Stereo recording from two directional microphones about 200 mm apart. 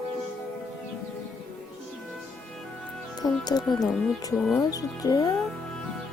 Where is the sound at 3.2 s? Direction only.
20° left (ahead or behind).